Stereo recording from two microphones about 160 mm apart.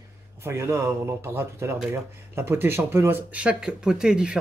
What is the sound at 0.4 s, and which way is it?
A man's voice, 15° right (ahead or behind).